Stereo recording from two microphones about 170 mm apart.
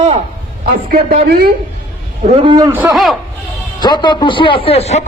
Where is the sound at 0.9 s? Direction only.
60° right (ahead or behind).